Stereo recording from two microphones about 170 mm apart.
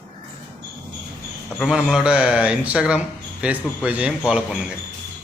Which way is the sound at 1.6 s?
Centre (ahead or behind).